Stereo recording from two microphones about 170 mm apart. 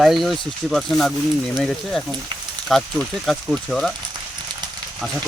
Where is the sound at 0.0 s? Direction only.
Centre (ahead or behind).